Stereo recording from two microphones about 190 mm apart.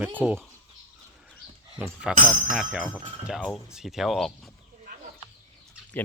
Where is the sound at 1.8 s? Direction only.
5° right (ahead or behind).